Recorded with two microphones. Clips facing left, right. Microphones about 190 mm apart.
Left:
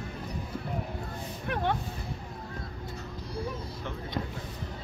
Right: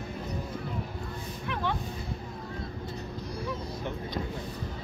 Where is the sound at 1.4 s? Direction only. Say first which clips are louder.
Left 2 dB; 50° left (ahead or behind).